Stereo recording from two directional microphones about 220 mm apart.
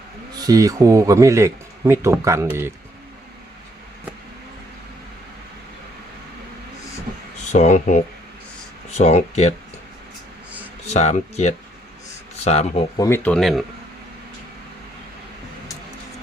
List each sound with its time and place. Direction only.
0.4 s speech: 15° right (ahead or behind)
7.5 s speech: 35° left (ahead or behind)
10.8 s speech: 30° left (ahead or behind)
13.0 s speech: 10° left (ahead or behind)